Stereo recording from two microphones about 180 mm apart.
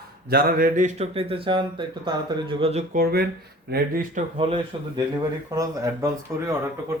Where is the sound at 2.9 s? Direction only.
55° right (ahead or behind).